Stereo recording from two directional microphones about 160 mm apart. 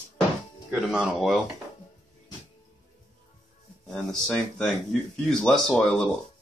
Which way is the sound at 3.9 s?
5° left (ahead or behind).